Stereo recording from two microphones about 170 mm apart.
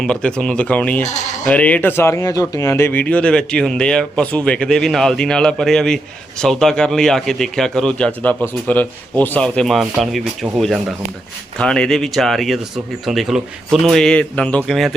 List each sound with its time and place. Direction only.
0.0 s a man's voice: 5° left (ahead or behind)